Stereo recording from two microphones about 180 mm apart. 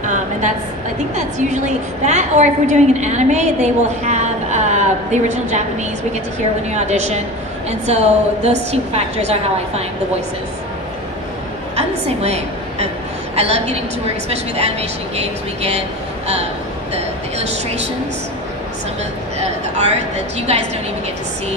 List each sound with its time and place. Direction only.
0.0 s a sound: 45° right (ahead or behind)
1.1 s a woman's voice: 40° right (ahead or behind)
6.7 s a woman's voice: 40° right (ahead or behind)
12.2 s a woman's voice: 35° right (ahead or behind)
20.3 s a woman's voice: 35° right (ahead or behind)